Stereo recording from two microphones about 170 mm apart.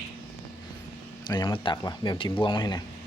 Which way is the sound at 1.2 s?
25° left (ahead or behind).